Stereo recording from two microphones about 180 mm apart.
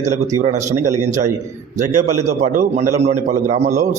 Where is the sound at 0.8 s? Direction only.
40° right (ahead or behind).